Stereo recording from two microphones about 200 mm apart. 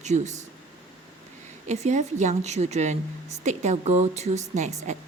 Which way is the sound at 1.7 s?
35° right (ahead or behind).